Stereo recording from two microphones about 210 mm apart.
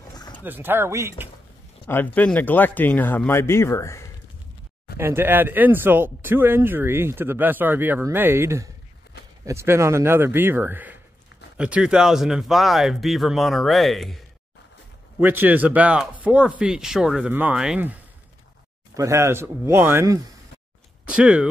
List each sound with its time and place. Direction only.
0.1 s a sound: 20° left (ahead or behind)
0.4 s speech: 10° right (ahead or behind)
1.9 s speech: 10° left (ahead or behind)
4.9 s speech: 10° right (ahead or behind)
15.1 s speech: 10° right (ahead or behind)
18.9 s speech: 15° right (ahead or behind)